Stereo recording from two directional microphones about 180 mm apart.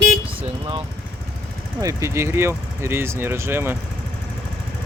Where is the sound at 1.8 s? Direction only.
15° right (ahead or behind).